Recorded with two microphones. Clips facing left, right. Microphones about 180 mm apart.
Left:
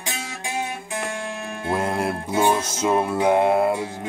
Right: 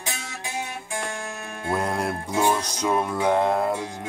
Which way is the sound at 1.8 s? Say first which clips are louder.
Left 2 dB; 5° left (ahead or behind).